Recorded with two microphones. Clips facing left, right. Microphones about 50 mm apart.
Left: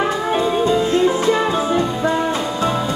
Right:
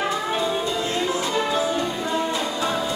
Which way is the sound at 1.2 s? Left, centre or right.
Left.